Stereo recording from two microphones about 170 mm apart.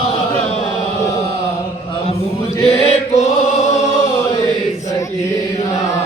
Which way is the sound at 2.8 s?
40° left (ahead or behind).